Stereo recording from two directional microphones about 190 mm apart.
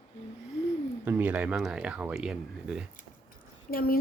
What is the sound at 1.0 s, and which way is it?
Speech, 10° right (ahead or behind).